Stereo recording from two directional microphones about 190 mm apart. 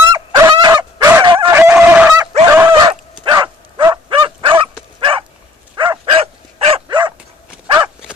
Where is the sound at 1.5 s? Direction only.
10° right (ahead or behind).